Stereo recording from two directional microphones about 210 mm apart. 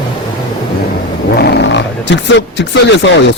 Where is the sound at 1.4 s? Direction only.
55° left (ahead or behind).